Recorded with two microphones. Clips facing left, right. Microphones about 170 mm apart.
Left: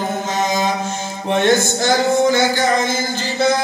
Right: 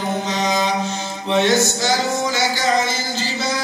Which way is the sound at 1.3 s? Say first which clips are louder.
Left 1 dB; 50° left (ahead or behind).